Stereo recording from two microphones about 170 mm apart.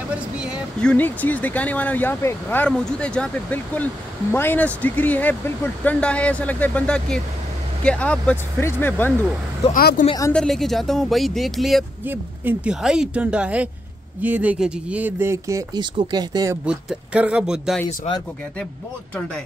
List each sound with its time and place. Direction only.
0.1 s a sound: 5° right (ahead or behind)
0.7 s speech: 10° left (ahead or behind)
9.7 s speech: 55° left (ahead or behind)
10.0 s a woman's voice: 20° left (ahead or behind)
10.3 s speech: centre (ahead or behind)
12.0 s speech: 10° right (ahead or behind)
16.6 s speech: 5° right (ahead or behind)